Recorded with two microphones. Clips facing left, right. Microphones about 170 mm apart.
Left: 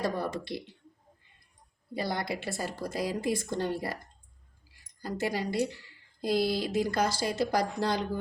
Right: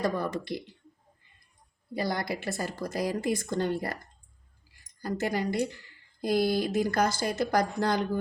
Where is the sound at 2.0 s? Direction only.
25° left (ahead or behind).